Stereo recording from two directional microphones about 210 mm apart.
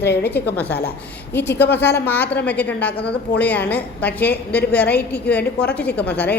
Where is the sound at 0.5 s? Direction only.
10° left (ahead or behind).